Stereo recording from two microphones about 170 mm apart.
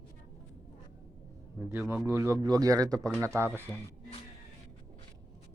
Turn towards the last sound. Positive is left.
turn(degrees=-15)  # may be behind; listen again after turning